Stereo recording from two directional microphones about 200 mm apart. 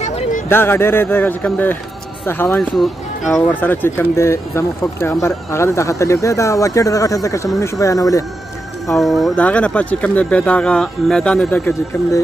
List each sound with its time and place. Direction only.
0.0 s a sound: 35° left (ahead or behind)
0.5 s speech: 10° left (ahead or behind)
8.8 s speech: centre (ahead or behind)